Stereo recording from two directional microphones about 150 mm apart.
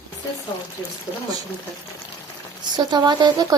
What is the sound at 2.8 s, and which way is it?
Speech, 30° right (ahead or behind).